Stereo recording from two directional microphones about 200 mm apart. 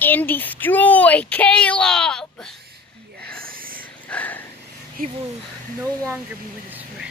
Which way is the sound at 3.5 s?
45° right (ahead or behind).